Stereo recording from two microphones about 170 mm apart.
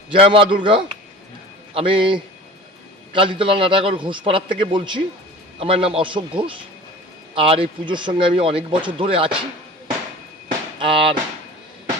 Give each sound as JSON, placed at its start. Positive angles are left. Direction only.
{"t": 0.1, "sound": "a man's voice", "side_deg": -30}
{"t": 10.8, "sound": "music", "side_deg": -30}